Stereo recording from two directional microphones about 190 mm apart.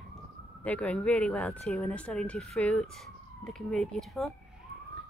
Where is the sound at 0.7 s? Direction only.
5° left (ahead or behind).